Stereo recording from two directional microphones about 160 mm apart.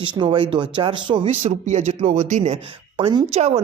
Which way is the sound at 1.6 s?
45° right (ahead or behind).